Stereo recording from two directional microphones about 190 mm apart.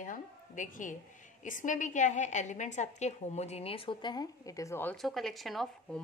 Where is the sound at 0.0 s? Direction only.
45° left (ahead or behind).